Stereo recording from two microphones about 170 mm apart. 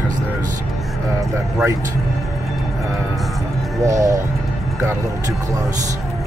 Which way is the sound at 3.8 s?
20° right (ahead or behind).